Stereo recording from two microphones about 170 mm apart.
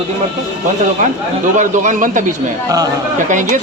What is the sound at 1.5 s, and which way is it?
Speech, 50° right (ahead or behind).